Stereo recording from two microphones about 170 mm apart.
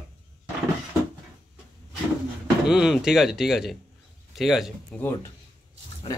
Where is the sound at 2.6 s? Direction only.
5° right (ahead or behind).